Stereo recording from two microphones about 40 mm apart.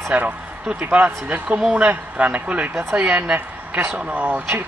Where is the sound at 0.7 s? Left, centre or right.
Right.